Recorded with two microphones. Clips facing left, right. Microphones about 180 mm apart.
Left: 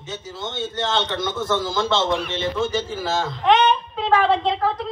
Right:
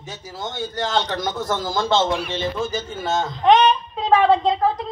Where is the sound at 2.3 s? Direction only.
25° left (ahead or behind).